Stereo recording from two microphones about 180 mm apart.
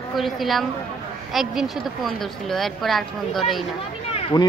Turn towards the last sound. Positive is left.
turn(degrees=25)  # may be behind; listen again after turning